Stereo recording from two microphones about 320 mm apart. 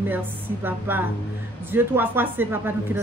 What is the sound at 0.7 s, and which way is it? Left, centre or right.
A woman's voice, centre.